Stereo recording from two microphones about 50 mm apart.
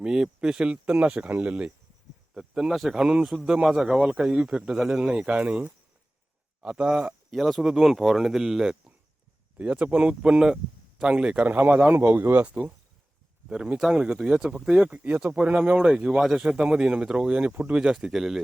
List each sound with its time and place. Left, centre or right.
0.0 s speech: centre
1.3 s speech: right
2.3 s speech: centre
5.2 s speech: right
7.3 s speech: centre
9.6 s speech: right
11.4 s speech: right
11.9 s speech: right
12.4 s speech: right
14.9 s speech: right
18.0 s speech: centre